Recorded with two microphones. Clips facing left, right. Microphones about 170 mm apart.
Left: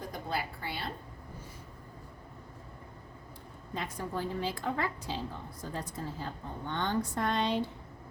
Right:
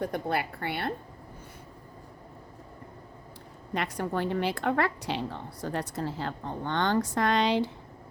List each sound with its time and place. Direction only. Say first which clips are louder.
0.0 s a woman's voice: right 7 dB; 65° right (ahead or behind)
3.8 s a woman's voice: right 6 dB; 75° right (ahead or behind); by 7.7 s 90° right